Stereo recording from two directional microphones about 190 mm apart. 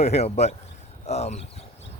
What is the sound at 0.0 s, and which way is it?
Speech, 35° left (ahead or behind).